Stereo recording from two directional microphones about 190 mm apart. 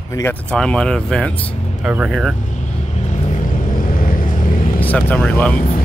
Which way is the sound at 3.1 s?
40° left (ahead or behind).